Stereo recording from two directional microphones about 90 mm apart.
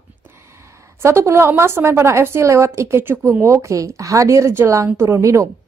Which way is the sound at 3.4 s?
35° right (ahead or behind).